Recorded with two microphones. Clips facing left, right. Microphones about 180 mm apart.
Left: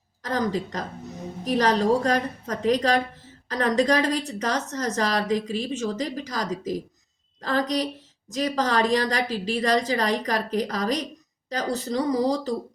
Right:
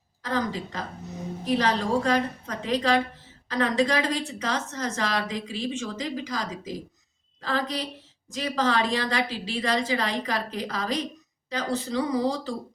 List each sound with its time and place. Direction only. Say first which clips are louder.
0.2 s a woman's voice: left 3 dB; 40° left (ahead or behind)